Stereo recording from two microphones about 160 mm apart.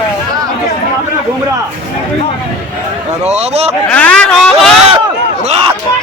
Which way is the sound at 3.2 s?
40° right (ahead or behind).